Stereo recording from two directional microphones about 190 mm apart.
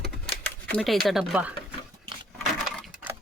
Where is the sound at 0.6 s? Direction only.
5° left (ahead or behind).